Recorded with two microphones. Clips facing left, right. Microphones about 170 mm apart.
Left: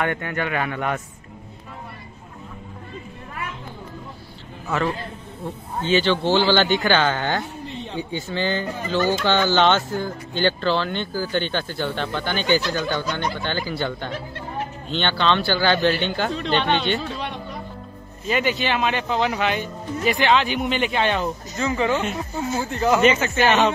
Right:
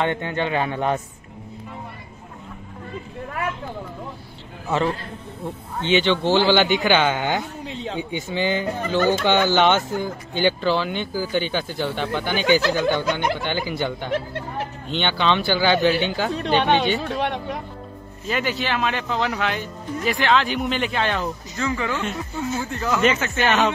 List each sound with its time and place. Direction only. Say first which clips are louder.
0.0 s speech: right 2 dB; 25° right (ahead or behind)
5.8 s speech: even; 20° right (ahead or behind)
7.6 s speech: right 2 dB; 90° right
8.0 s speech: even; 20° right (ahead or behind)
17.0 s speech: right 5 dB; 60° right (ahead or behind)
18.3 s speech: left 2 dB; centre (ahead or behind)
21.5 s speech: left 3 dB; 25° left (ahead or behind)
23.0 s speech: left 2 dB; 5° left (ahead or behind)